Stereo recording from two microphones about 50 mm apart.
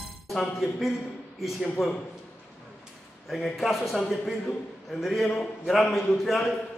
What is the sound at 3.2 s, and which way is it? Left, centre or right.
A man's voice, centre.